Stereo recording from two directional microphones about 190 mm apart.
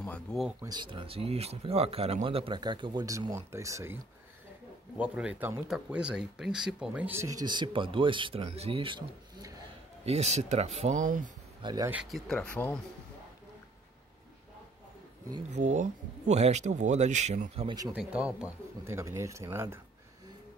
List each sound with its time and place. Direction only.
0.0 s speech: 5° left (ahead or behind)
0.5 s speech: 15° right (ahead or behind)
10.0 s speech: 35° right (ahead or behind)
11.6 s speech: 20° right (ahead or behind)
11.9 s speech: centre (ahead or behind)
15.5 s speech: 40° right (ahead or behind)
17.9 s speech: 5° right (ahead or behind)